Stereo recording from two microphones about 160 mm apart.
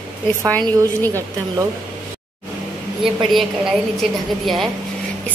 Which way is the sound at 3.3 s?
Centre (ahead or behind).